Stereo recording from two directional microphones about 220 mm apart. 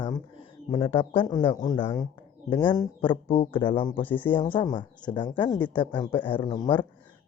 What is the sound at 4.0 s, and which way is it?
Speech, 10° left (ahead or behind).